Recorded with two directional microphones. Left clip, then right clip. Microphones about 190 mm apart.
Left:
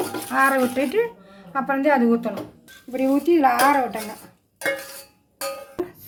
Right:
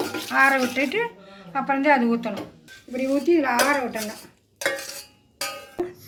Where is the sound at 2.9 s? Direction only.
60° left (ahead or behind).